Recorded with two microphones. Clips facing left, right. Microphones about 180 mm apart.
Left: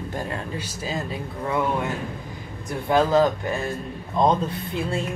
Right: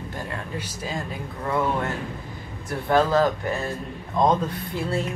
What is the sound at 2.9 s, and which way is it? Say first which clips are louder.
Speech: left 1 dB; 15° left (ahead or behind).